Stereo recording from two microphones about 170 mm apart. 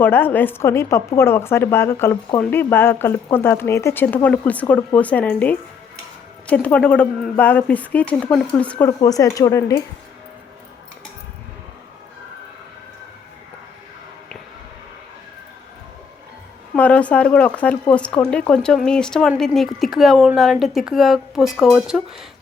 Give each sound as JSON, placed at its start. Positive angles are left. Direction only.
{"t": 0.0, "sound": "speech", "side_deg": 10}
{"t": 9.0, "sound": "speech", "side_deg": 20}
{"t": 16.7, "sound": "a woman's voice", "side_deg": 10}